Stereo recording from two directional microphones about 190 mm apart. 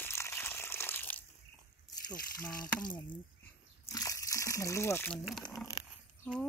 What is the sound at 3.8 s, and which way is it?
Slosh, 15° left (ahead or behind).